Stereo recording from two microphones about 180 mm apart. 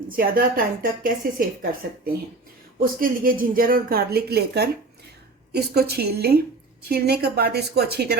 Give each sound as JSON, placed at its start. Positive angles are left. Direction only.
{"t": 0.2, "sound": "a woman's voice", "side_deg": -50}
{"t": 2.8, "sound": "speech", "side_deg": -50}